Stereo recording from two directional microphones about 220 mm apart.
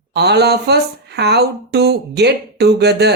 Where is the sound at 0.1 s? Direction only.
50° right (ahead or behind).